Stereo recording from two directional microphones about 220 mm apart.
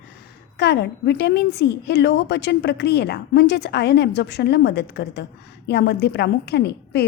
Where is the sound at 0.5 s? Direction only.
50° left (ahead or behind).